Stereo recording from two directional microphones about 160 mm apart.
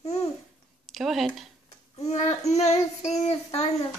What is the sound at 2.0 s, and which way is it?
Child singing, 45° left (ahead or behind).